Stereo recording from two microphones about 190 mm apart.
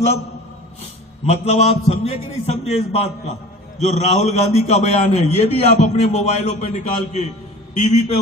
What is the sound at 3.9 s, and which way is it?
A man's voice, 35° left (ahead or behind).